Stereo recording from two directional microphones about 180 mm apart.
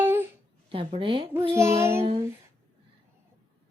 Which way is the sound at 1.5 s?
15° right (ahead or behind).